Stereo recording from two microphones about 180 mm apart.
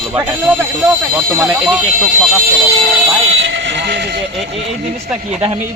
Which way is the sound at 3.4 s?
90° right.